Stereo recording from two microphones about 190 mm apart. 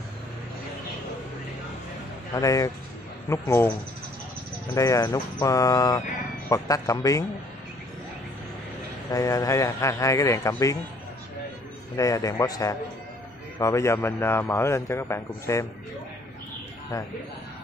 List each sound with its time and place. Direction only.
2.3 s a man's voice: 20° left (ahead or behind)
4.7 s speech: 15° left (ahead or behind)
9.1 s a man's voice: 20° left (ahead or behind)
12.0 s a man's voice: 15° left (ahead or behind)
16.9 s a man's voice: 15° left (ahead or behind)